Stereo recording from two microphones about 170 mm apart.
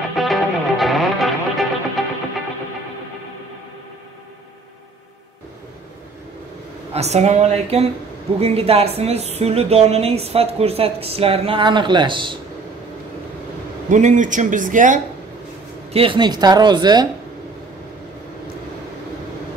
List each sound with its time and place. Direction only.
0.1 s music: centre (ahead or behind)
6.9 s speech: 40° right (ahead or behind)
13.8 s speech: 45° right (ahead or behind)
15.9 s speech: 30° right (ahead or behind)